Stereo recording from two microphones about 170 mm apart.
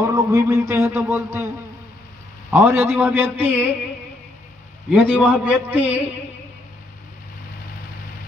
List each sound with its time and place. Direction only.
0.0 s a man's voice: 20° right (ahead or behind)
2.5 s a man's voice: 15° right (ahead or behind)
4.8 s a man's voice: 10° right (ahead or behind)